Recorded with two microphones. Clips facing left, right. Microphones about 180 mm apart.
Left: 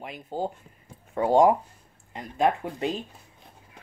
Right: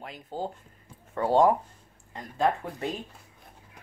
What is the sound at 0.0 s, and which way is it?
Speech, 15° left (ahead or behind).